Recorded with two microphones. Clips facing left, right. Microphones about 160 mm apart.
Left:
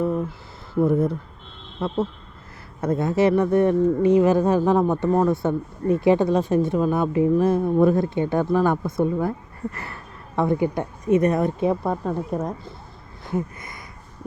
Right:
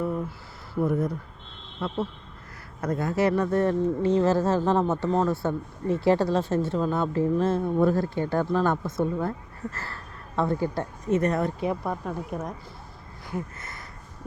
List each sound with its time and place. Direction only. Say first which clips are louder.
0.8 s speech: left 6 dB; 25° left (ahead or behind)
2.8 s speech: left 5 dB; 25° left (ahead or behind)
13.2 s speech: left 6 dB; 20° left (ahead or behind)